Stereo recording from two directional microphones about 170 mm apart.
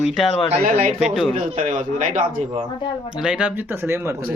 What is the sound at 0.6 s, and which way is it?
Speech, 55° right (ahead or behind).